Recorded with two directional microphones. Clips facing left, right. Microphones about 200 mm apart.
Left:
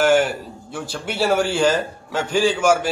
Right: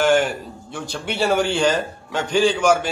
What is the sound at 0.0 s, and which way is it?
A man's voice, 5° left (ahead or behind).